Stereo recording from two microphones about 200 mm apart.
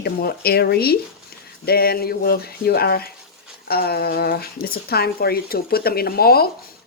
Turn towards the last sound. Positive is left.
turn(degrees=50)  # may be behind; listen again after turning